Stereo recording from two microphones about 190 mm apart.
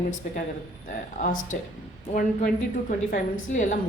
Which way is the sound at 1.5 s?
45° left (ahead or behind).